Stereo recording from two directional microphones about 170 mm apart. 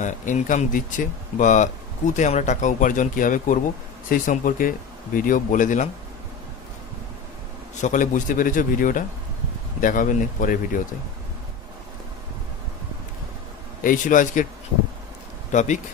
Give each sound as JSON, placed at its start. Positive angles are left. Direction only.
{"t": 0.0, "sound": "speech", "side_deg": 50}
{"t": 7.8, "sound": "speech", "side_deg": 50}
{"t": 13.8, "sound": "speech", "side_deg": 50}
{"t": 15.5, "sound": "speech", "side_deg": 45}